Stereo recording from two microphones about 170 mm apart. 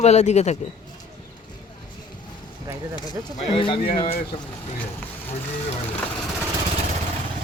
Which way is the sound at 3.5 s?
30° left (ahead or behind).